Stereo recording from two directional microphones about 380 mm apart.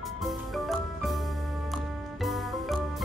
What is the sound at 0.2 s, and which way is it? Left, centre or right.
Music, centre.